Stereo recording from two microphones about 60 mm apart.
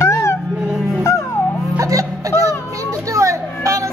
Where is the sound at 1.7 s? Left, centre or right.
Right.